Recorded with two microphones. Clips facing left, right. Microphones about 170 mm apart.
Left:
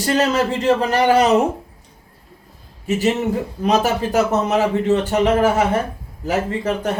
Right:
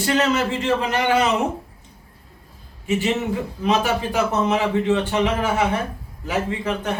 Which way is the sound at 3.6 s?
40° left (ahead or behind).